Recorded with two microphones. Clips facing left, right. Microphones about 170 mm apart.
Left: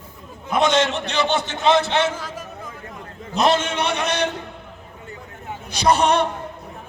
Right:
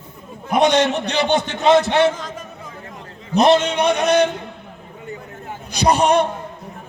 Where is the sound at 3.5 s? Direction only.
15° right (ahead or behind).